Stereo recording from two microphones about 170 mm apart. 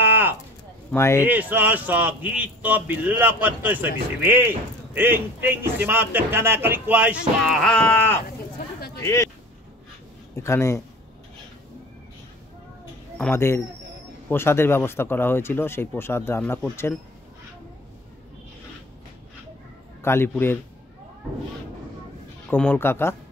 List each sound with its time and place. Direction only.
0.0 s a sound: 10° right (ahead or behind)
0.9 s speech: 15° left (ahead or behind)
1.2 s a man's voice: 10° right (ahead or behind)
7.5 s speech: 5° left (ahead or behind)
10.3 s speech: 15° left (ahead or behind)
13.2 s speech: 15° left (ahead or behind)
20.0 s speech: 15° left (ahead or behind)
22.5 s speech: 10° left (ahead or behind)